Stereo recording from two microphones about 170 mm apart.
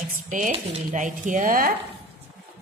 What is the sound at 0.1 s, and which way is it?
Dishes, 50° right (ahead or behind).